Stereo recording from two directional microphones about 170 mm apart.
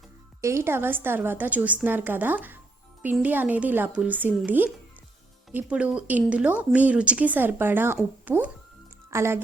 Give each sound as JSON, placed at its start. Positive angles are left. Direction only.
{"t": 0.4, "sound": "speech", "side_deg": -15}